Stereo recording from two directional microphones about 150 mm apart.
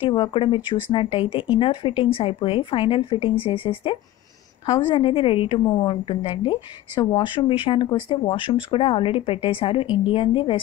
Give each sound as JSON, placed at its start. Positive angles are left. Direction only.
{"t": 0.0, "sound": "speech", "side_deg": 35}